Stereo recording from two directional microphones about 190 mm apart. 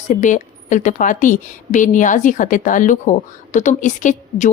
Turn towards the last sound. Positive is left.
turn(degrees=40)  # may be behind; listen again after turning